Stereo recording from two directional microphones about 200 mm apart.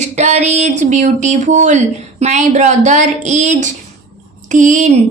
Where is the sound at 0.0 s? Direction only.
35° right (ahead or behind).